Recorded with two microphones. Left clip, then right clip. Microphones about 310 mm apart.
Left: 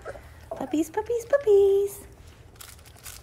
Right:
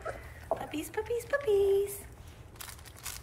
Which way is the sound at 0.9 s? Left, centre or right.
Left.